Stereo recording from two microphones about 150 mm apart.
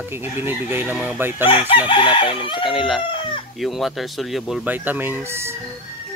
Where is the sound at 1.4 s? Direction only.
35° left (ahead or behind).